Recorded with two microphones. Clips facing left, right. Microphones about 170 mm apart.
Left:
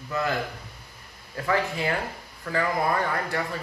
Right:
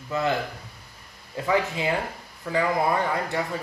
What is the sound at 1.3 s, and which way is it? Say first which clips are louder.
Speech: right 2 dB; 15° right (ahead or behind).